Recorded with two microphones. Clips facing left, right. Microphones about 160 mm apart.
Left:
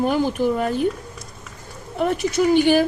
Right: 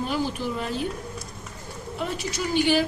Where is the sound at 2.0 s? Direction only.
55° left (ahead or behind).